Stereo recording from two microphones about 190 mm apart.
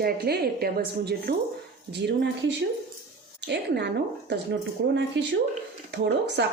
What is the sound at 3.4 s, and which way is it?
Speech, 60° right (ahead or behind).